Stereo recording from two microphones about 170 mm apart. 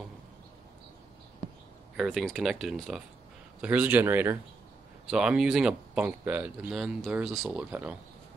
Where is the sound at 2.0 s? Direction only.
Centre (ahead or behind).